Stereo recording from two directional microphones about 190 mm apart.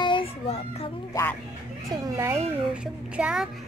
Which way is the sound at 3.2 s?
5° right (ahead or behind).